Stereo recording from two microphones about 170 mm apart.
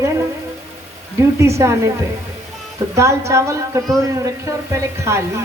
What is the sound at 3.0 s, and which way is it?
Speech, 15° right (ahead or behind).